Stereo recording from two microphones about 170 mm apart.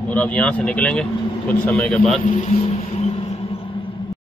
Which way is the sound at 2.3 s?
45° left (ahead or behind).